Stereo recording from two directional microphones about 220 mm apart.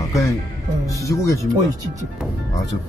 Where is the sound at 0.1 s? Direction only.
15° left (ahead or behind).